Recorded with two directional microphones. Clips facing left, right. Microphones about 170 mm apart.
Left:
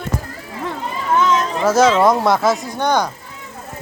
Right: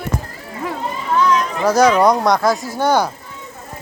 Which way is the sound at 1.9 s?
Centre (ahead or behind).